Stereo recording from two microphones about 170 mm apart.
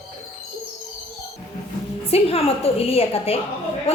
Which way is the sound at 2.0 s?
35° left (ahead or behind).